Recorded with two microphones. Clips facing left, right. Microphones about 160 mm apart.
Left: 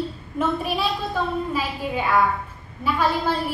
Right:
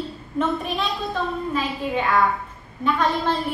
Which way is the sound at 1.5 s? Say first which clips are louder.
Right 1 dB; 5° left (ahead or behind).